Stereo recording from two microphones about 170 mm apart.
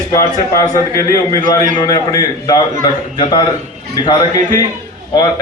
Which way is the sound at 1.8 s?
20° left (ahead or behind).